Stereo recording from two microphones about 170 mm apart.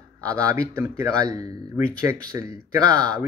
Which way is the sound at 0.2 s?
20° right (ahead or behind).